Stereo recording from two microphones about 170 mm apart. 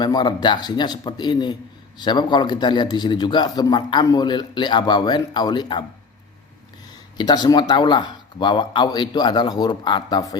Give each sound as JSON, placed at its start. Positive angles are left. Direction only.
{"t": 0.0, "sound": "a man's voice", "side_deg": 25}
{"t": 7.2, "sound": "a man's voice", "side_deg": 25}